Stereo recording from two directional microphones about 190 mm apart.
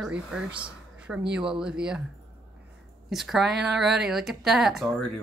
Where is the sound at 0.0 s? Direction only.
5° right (ahead or behind).